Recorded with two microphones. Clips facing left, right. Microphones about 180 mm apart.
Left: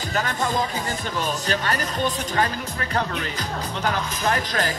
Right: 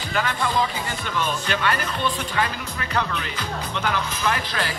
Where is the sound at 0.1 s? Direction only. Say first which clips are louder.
Right 1 dB; 45° left (ahead or behind).